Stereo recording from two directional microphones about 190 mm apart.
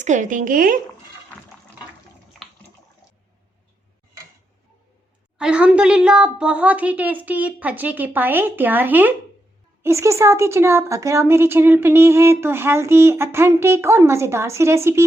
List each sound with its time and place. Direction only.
0.0 s speech: 40° right (ahead or behind)
5.4 s a woman's voice: 5° right (ahead or behind)